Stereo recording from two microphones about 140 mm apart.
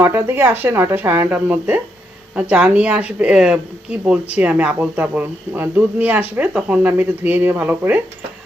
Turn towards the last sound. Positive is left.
turn(degrees=-10)  # may be behind; listen again after turning